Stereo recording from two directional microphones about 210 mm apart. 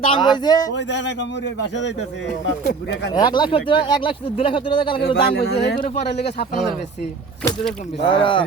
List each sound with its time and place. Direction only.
0.0 s speech: 20° left (ahead or behind)
0.7 s speech: 55° left (ahead or behind)
2.6 s speech: 55° left (ahead or behind)
3.2 s speech: 20° left (ahead or behind)
5.3 s speech: 50° left (ahead or behind)
8.0 s speech: 25° left (ahead or behind)